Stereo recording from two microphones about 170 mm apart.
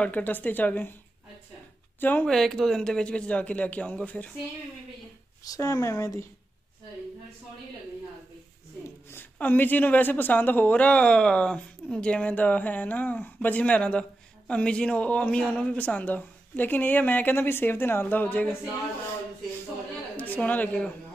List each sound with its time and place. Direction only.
0.0 s speech: 10° left (ahead or behind)
2.0 s speech: 10° left (ahead or behind)
5.4 s speech: 20° left (ahead or behind)
9.1 s speech: 10° left (ahead or behind)
20.2 s a woman's voice: 10° left (ahead or behind)